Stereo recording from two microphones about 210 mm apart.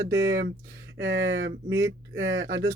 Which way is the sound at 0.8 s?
60° right (ahead or behind).